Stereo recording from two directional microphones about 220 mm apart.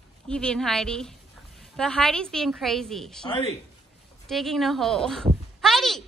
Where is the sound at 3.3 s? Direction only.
25° left (ahead or behind).